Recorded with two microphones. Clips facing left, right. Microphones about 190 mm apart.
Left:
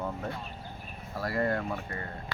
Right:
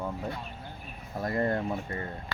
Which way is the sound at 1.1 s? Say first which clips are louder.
Right 1 dB; 20° right (ahead or behind).